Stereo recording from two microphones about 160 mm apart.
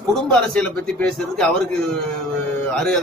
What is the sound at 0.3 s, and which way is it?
A man's voice, 5° left (ahead or behind).